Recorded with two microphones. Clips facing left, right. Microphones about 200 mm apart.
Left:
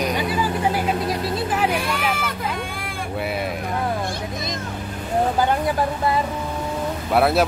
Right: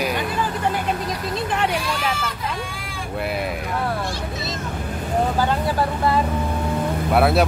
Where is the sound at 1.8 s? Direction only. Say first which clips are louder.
Left 1 dB; 55° left (ahead or behind).